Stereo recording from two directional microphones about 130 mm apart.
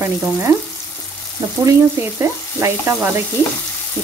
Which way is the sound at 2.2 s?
20° right (ahead or behind).